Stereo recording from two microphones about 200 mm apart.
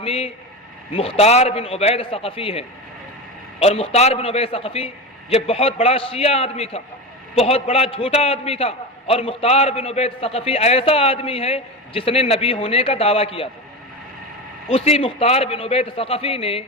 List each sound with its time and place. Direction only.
0.0 s a man's voice: 30° left (ahead or behind)
14.7 s a man's voice: 30° left (ahead or behind)